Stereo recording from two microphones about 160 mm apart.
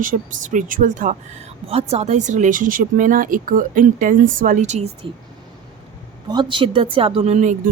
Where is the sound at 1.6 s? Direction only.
40° right (ahead or behind).